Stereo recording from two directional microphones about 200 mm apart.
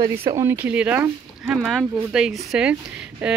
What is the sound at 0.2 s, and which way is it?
Speech, 15° right (ahead or behind).